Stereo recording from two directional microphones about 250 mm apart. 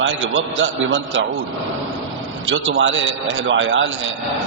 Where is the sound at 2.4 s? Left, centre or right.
Right.